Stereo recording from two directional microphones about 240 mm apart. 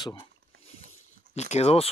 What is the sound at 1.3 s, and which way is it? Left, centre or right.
Speech, left.